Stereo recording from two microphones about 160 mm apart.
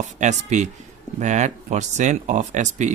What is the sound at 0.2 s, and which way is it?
Speech, 45° right (ahead or behind).